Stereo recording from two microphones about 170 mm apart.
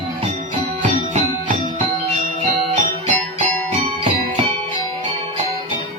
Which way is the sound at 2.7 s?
45° right (ahead or behind).